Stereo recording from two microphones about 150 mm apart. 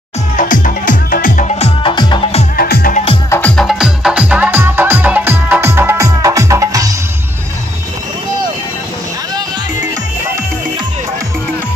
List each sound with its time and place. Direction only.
0.4 s music: 60° left (ahead or behind); by 2.2 s 30° left (ahead or behind)
2.5 s music: 80° left
3.3 s music: 15° left (ahead or behind)
3.5 s music: centre (ahead or behind); by 6.9 s 20° right (ahead or behind)